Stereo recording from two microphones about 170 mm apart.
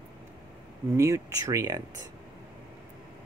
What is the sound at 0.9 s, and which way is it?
Speech, 15° right (ahead or behind).